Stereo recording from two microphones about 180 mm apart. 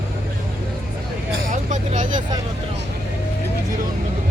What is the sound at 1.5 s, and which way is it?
Vehicle, 45° right (ahead or behind).